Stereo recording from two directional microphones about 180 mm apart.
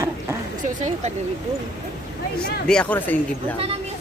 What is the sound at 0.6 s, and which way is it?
Speech, 40° right (ahead or behind).